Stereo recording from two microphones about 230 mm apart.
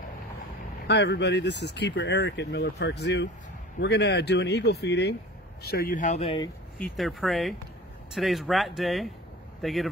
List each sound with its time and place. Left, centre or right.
0.8 s speech: left
6.8 s speech: centre